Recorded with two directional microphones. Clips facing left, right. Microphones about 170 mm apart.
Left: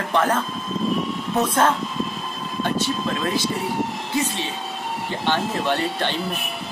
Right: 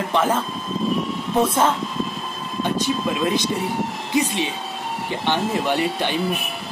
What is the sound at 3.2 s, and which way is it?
Speech, 20° right (ahead or behind).